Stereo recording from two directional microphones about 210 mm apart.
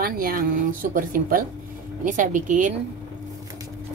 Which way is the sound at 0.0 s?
45° right (ahead or behind).